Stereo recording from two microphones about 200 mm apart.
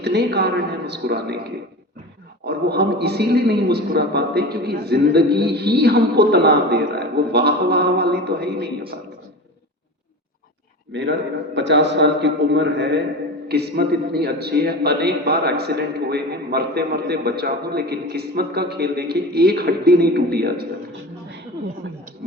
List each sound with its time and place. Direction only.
0.0 s a man's voice: 55° right (ahead or behind)
10.9 s a man's voice: 60° right (ahead or behind)